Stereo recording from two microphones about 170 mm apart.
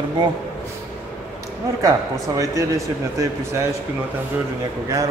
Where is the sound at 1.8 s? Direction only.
20° right (ahead or behind).